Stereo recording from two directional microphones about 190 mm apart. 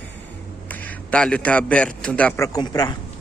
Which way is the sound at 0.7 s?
5° left (ahead or behind).